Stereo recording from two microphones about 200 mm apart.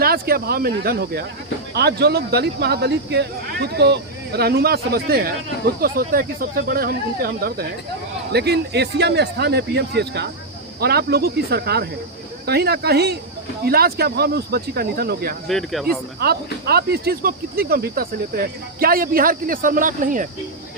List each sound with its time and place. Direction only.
0.0 s speech: 50° right (ahead or behind)
15.4 s speech: centre (ahead or behind)
16.2 s speech: 50° right (ahead or behind)